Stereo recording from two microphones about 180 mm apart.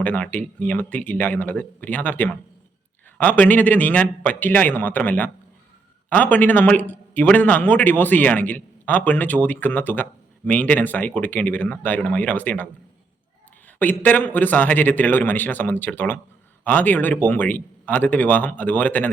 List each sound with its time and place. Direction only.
0.0 s a man's voice: 10° left (ahead or behind)
13.7 s a man's voice: 10° left (ahead or behind)